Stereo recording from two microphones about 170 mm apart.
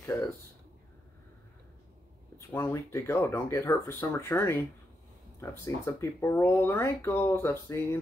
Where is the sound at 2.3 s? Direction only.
15° left (ahead or behind).